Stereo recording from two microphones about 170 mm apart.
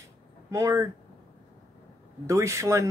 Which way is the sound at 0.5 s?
15° right (ahead or behind).